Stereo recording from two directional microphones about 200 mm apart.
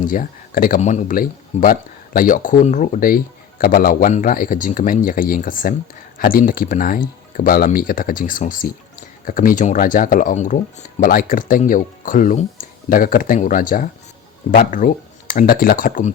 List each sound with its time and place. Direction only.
0.0 s speech: 40° left (ahead or behind)